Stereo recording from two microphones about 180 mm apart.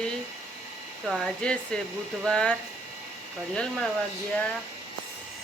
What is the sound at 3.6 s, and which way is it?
Speech, 5° left (ahead or behind).